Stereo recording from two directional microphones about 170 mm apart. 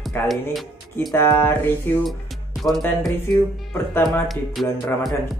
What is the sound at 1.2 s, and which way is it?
Speech, 15° left (ahead or behind).